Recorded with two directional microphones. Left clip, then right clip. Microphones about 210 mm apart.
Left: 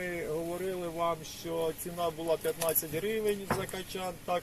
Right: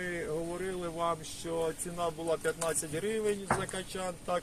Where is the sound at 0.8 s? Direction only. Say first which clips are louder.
Even; 20° right (ahead or behind).